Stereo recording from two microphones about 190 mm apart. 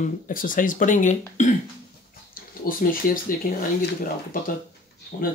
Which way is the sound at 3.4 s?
55° left (ahead or behind).